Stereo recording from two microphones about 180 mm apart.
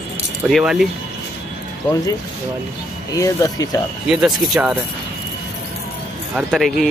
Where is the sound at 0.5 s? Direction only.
Centre (ahead or behind).